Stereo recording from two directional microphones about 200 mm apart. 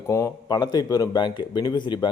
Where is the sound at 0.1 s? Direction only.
15° left (ahead or behind).